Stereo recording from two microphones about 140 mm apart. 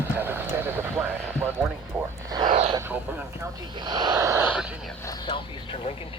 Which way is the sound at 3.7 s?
30° right (ahead or behind).